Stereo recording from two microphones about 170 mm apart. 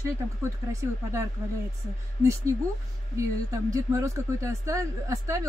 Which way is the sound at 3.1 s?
20° right (ahead or behind).